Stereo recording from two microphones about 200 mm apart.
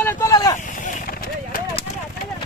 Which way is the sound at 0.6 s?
40° left (ahead or behind).